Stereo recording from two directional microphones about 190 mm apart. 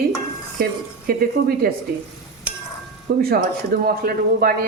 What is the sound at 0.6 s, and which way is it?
Speech, 55° right (ahead or behind).